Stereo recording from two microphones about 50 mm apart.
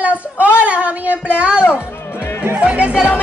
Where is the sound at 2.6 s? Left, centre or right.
Right.